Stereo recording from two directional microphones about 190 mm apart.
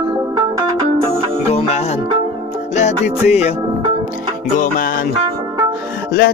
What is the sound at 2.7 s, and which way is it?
Music, 35° left (ahead or behind).